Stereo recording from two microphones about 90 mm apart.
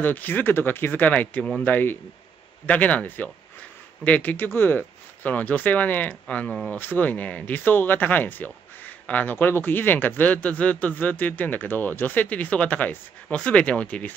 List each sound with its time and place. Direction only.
0.0 s speech: 20° left (ahead or behind)